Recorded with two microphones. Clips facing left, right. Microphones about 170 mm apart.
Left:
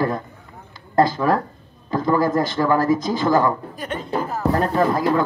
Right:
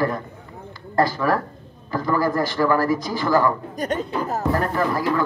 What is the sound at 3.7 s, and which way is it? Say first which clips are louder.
Speech: right 1 dB; 40° right (ahead or behind).